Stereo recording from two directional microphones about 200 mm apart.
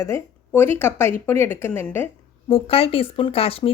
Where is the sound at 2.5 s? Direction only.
30° left (ahead or behind).